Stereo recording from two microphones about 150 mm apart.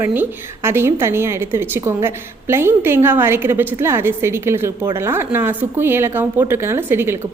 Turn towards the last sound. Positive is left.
turn(degrees=-15)  # may be behind; listen again after turning